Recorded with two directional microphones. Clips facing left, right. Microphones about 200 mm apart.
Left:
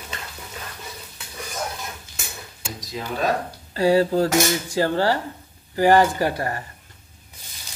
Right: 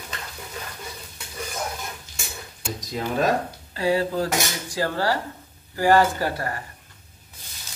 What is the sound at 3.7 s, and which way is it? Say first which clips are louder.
Speech: left 5 dB; 30° left (ahead or behind).